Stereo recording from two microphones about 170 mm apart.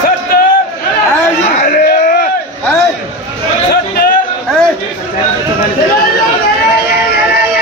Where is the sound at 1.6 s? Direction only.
55° left (ahead or behind).